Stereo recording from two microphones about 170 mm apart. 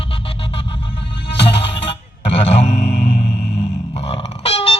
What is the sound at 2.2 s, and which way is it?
Music, 40° left (ahead or behind).